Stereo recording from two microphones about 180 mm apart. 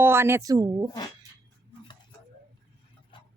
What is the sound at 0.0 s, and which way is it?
Speech, 15° right (ahead or behind).